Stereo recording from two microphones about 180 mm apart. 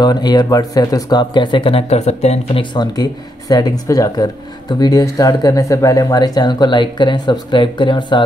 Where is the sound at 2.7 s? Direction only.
25° left (ahead or behind).